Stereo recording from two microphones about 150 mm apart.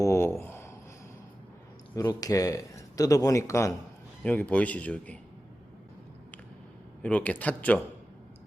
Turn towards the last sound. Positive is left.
turn(degrees=10)  # may be behind; listen again after turning